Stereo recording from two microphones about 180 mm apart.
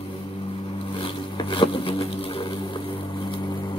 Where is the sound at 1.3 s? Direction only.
25° left (ahead or behind).